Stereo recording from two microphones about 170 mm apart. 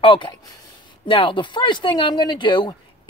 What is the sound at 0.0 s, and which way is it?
Speech, 30° left (ahead or behind).